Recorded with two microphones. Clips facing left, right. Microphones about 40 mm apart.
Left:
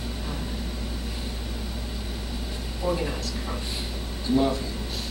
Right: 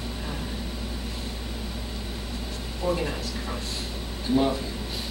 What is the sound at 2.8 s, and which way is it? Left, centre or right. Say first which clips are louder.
Speech: even; centre.